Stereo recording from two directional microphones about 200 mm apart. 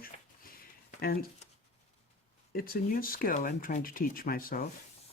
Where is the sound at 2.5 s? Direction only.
45° left (ahead or behind).